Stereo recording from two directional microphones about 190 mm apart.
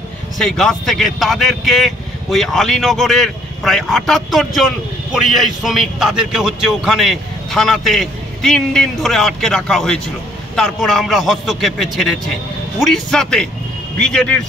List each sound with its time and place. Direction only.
0.4 s a man's voice: centre (ahead or behind)